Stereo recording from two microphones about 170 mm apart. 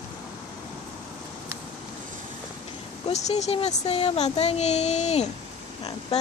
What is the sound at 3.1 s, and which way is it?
Speech, 40° left (ahead or behind).